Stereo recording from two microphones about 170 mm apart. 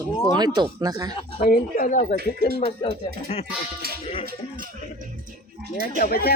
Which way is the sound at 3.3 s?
35° left (ahead or behind).